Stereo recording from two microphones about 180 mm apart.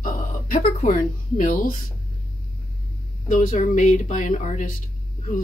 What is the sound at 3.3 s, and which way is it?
Speech, 45° left (ahead or behind).